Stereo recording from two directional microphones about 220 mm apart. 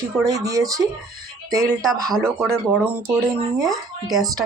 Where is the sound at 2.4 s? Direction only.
Centre (ahead or behind).